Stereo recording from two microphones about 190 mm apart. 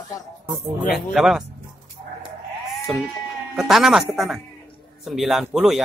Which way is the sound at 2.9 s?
Centre (ahead or behind).